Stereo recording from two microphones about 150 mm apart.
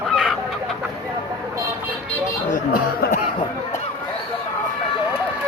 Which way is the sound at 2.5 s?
65° left (ahead or behind).